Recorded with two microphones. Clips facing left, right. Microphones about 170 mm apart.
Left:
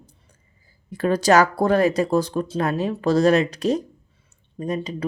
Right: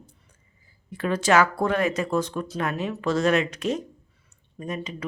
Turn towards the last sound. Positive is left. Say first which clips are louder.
# left 6 dB
turn(degrees=35)  # may be behind; listen again after turning